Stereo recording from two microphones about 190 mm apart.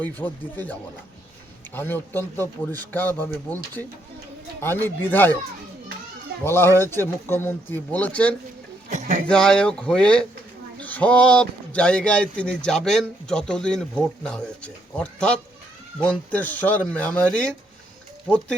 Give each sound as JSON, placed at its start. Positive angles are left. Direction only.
{"t": 0.0, "sound": "speech", "side_deg": 10}
{"t": 6.4, "sound": "speech", "side_deg": 10}
{"t": 8.9, "sound": "a sound", "side_deg": -40}
{"t": 9.2, "sound": "speech", "side_deg": 5}